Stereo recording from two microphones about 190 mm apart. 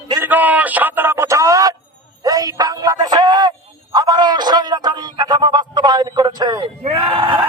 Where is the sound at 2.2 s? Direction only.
20° right (ahead or behind).